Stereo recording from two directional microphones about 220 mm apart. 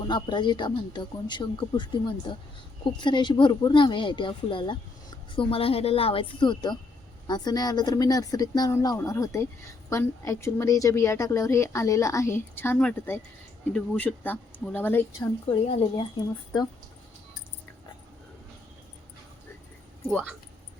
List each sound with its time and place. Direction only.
0.0 s a woman's voice: 20° left (ahead or behind)
15.4 s speech: 25° left (ahead or behind)
20.1 s speech: centre (ahead or behind)